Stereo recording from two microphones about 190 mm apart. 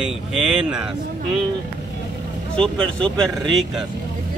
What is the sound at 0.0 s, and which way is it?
Speech, 5° right (ahead or behind).